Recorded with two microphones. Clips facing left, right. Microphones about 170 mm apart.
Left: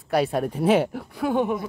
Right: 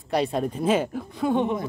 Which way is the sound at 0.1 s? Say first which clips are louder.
Left 2 dB; 5° left (ahead or behind).